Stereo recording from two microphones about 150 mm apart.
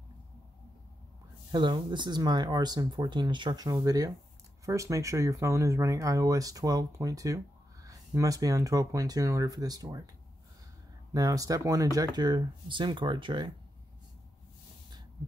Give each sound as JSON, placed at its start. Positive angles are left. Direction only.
{"t": 1.5, "sound": "speech", "side_deg": -30}
{"t": 11.1, "sound": "speech", "side_deg": -20}